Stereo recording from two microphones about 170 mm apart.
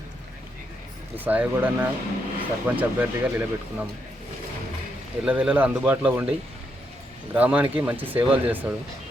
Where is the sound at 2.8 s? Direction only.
10° right (ahead or behind).